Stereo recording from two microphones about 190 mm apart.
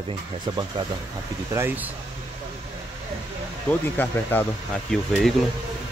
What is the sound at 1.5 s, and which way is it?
Speech, 15° right (ahead or behind).